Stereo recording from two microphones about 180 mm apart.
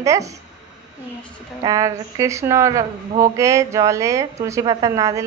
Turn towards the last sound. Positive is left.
turn(degrees=-15)  # may be behind; listen again after turning